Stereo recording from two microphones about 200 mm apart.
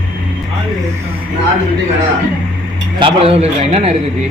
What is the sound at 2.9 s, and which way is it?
Speech, 25° right (ahead or behind).